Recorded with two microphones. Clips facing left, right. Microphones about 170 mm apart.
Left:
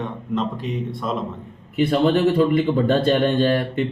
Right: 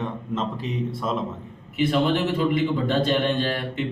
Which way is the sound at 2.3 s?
55° left (ahead or behind).